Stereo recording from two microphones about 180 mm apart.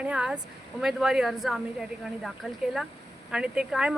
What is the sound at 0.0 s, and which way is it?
Speech, 5° right (ahead or behind).